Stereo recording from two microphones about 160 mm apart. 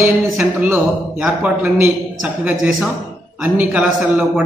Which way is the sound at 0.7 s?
10° right (ahead or behind).